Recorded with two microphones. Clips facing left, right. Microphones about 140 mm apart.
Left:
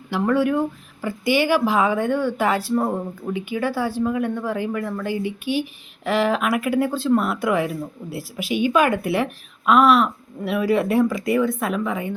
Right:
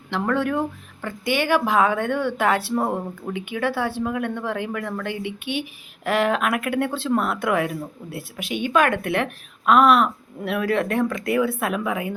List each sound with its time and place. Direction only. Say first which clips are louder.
0.1 s speech: left 3 dB; 5° left (ahead or behind)